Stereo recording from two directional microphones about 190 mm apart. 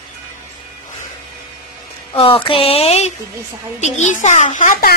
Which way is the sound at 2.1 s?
30° left (ahead or behind).